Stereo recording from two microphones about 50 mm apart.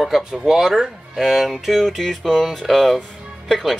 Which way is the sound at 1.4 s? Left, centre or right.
Centre.